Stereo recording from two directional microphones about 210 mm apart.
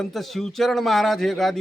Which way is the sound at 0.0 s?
Centre (ahead or behind).